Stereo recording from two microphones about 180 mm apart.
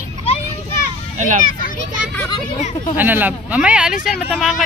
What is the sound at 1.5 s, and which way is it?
Children playing, 50° left (ahead or behind).